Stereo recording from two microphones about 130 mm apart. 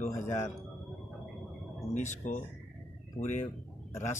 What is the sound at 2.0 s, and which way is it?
Speech, 65° left (ahead or behind).